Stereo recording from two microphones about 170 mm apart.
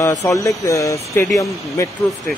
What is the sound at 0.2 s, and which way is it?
Speech, 20° left (ahead or behind).